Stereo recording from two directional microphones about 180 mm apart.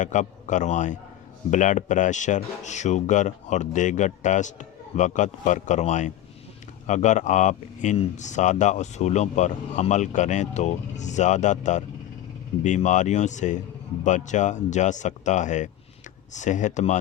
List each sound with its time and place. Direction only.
0.0 s speech: 45° left (ahead or behind)